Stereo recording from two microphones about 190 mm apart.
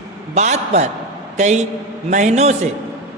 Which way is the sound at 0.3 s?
35° right (ahead or behind).